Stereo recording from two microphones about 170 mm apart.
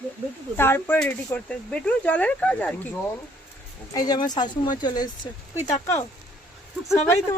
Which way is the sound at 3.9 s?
25° left (ahead or behind).